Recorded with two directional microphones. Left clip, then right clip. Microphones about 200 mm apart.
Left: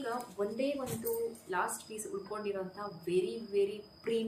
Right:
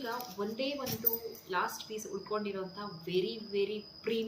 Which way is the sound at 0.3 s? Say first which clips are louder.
Left 3 dB; 20° left (ahead or behind).